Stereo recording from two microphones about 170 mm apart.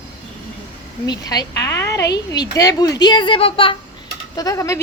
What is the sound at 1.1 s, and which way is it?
A man's voice, 20° left (ahead or behind).